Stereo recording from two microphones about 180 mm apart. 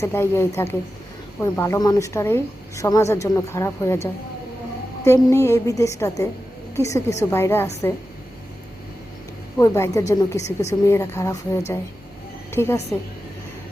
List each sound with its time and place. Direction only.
0.0 s a woman's voice: 15° left (ahead or behind)
9.6 s a woman's voice: 15° left (ahead or behind)